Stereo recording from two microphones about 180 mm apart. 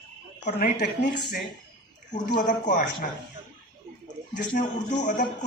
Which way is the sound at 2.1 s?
45° left (ahead or behind).